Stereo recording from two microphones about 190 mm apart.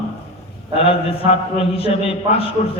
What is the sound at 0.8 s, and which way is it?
A man's voice, 30° left (ahead or behind).